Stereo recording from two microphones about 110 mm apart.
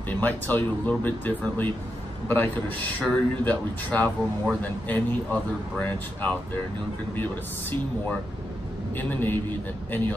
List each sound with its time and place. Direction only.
0.2 s speech: 15° left (ahead or behind)
8.9 s speech: 15° left (ahead or behind)